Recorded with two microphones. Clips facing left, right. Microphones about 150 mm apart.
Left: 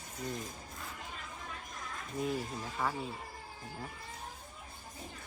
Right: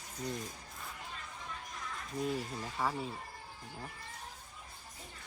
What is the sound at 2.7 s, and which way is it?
Speech, centre (ahead or behind).